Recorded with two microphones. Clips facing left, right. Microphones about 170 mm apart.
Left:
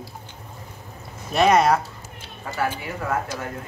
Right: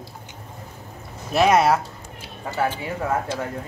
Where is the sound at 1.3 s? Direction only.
5° right (ahead or behind).